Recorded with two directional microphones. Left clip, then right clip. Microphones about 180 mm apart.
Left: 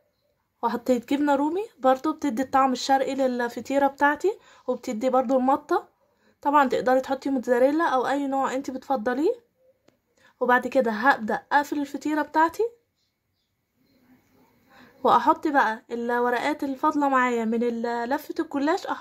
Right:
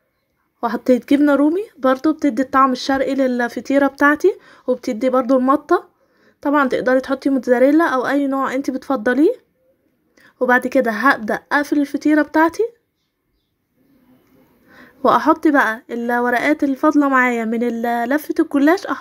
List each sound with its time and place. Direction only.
0.6 s a woman's voice: 15° right (ahead or behind)
14.8 s a sound: 20° right (ahead or behind)
15.4 s a woman's voice: 20° right (ahead or behind)